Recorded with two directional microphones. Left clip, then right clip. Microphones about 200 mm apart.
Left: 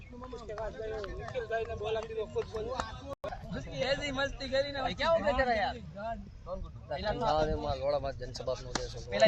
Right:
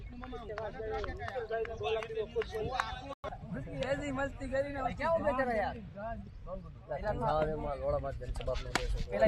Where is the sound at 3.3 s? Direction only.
45° left (ahead or behind).